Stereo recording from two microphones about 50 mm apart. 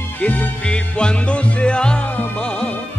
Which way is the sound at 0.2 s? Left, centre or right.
Left.